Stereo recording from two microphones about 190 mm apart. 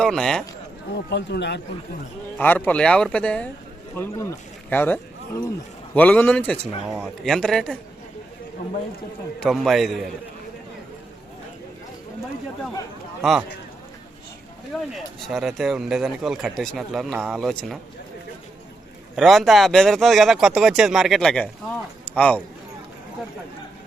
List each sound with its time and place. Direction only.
0.0 s a man's voice: 5° left (ahead or behind)
0.9 s speech: 65° left (ahead or behind)
2.4 s a man's voice: 10° left (ahead or behind)
9.4 s speech: centre (ahead or behind)
13.2 s speech: centre (ahead or behind)
14.9 s speech: centre (ahead or behind)
19.1 s speech: centre (ahead or behind)
22.0 s a sound: 5° left (ahead or behind)